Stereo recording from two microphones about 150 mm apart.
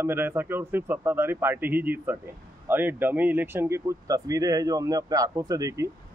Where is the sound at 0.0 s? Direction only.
15° right (ahead or behind).